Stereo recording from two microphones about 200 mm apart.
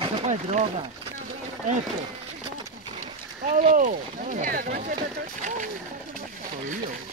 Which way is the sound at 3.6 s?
40° right (ahead or behind).